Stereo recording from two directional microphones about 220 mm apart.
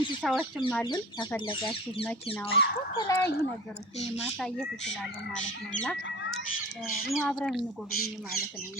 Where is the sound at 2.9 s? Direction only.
15° left (ahead or behind).